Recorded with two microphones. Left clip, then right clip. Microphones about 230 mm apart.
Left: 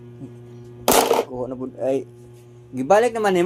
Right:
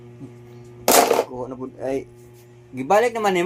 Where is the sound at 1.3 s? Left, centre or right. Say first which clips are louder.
Left 2 dB; centre.